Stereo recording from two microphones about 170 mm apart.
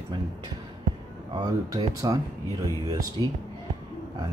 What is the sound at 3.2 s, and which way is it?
Speech, 25° right (ahead or behind).